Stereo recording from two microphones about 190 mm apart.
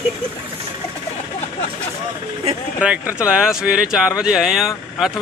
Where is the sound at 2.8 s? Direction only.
5° right (ahead or behind).